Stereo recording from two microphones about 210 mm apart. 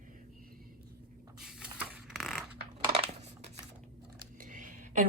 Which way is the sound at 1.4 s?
5° right (ahead or behind).